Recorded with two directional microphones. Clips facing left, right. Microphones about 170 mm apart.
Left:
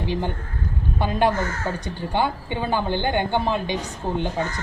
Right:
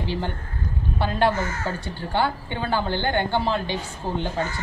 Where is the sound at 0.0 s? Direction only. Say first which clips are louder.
Left 2 dB; 15° left (ahead or behind).